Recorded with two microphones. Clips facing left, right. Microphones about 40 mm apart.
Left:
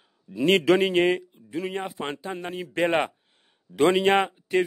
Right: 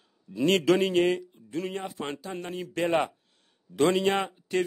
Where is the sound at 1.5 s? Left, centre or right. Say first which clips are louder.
Left 3 dB; centre.